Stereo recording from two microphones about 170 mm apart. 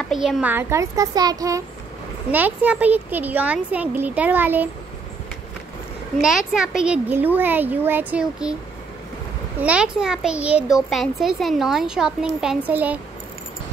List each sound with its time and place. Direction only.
0.1 s speech: centre (ahead or behind); by 1.6 s 20° right (ahead or behind)
2.3 s speech: 10° right (ahead or behind)
6.2 s speech: 5° right (ahead or behind)
9.6 s a child's voice: 5° right (ahead or behind)